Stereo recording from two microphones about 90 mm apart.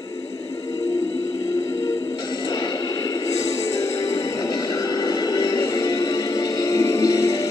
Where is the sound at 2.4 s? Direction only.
45° left (ahead or behind).